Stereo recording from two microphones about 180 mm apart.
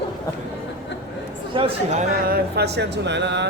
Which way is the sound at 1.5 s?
30° right (ahead or behind).